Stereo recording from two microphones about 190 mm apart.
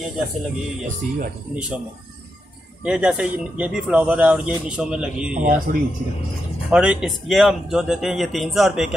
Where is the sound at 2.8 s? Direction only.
5° right (ahead or behind).